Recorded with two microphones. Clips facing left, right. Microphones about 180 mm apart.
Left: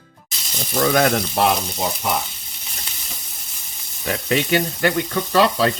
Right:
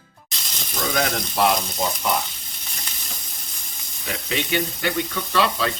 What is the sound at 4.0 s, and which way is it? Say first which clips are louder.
Speech: left 6 dB; 50° left (ahead or behind).